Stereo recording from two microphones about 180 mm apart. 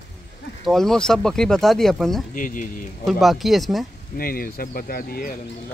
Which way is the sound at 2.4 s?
50° left (ahead or behind).